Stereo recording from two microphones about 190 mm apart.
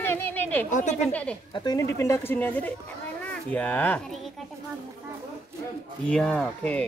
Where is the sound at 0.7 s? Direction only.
40° left (ahead or behind).